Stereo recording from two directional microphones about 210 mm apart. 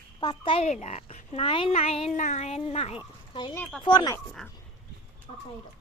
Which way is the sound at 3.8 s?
20° left (ahead or behind).